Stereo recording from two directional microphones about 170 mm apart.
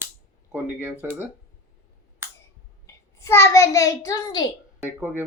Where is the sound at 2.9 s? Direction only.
15° left (ahead or behind).